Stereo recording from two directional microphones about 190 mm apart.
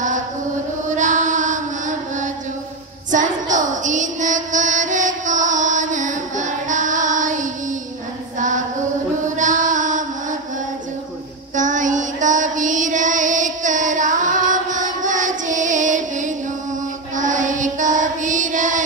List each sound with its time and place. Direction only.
0.8 s music: 40° right (ahead or behind)
3.1 s child singing: 40° right (ahead or behind)
8.4 s female singing: 40° right (ahead or behind)
9.4 s music: 40° right (ahead or behind)
11.5 s child singing: 40° right (ahead or behind)